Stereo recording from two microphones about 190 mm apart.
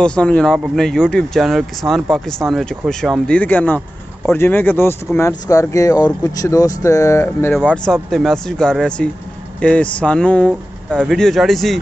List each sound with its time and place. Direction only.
0.0 s speech: 5° left (ahead or behind)